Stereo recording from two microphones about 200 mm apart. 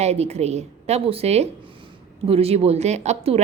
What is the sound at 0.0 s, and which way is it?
A woman's voice, 30° right (ahead or behind).